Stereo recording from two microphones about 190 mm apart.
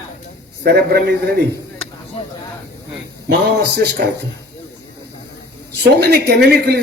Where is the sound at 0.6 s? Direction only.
60° right (ahead or behind).